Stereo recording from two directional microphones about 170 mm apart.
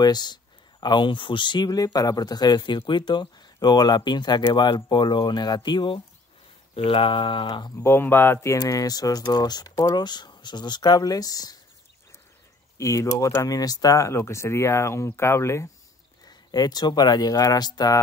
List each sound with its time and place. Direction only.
0.0 s speech: 25° left (ahead or behind)
6.7 s a sound: 30° left (ahead or behind)
7.7 s speech: 15° left (ahead or behind)
12.7 s speech: 20° left (ahead or behind)